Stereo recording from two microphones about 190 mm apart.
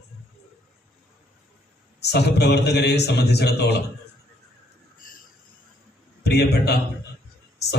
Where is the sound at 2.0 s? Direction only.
60° left (ahead or behind).